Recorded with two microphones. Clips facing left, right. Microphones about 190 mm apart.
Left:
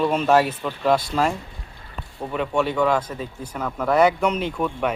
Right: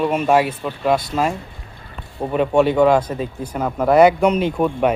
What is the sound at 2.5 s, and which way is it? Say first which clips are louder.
Speech: right 7 dB; 20° right (ahead or behind).